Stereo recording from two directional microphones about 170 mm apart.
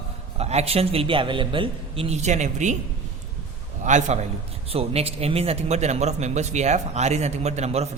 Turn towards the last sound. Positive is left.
turn(degrees=-40)  # may be behind; listen again after turning